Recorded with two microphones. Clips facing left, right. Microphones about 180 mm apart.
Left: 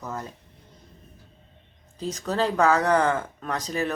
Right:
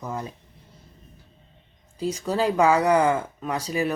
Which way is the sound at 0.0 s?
10° right (ahead or behind).